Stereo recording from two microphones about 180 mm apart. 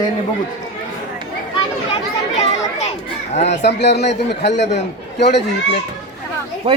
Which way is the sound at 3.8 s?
70° left (ahead or behind).